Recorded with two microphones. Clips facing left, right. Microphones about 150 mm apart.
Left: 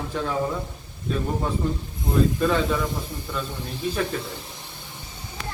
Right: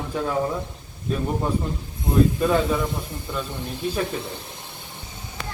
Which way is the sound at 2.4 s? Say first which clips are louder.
Right 1 dB; 15° right (ahead or behind).